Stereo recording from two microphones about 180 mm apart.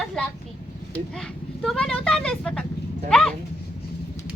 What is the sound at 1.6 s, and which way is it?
Speech, 5° left (ahead or behind).